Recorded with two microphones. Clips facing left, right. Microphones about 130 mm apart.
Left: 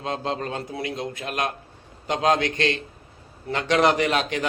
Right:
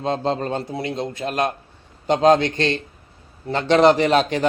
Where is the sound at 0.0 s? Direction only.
35° right (ahead or behind).